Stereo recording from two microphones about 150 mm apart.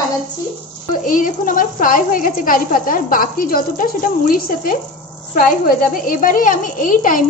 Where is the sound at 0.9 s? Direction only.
65° left (ahead or behind).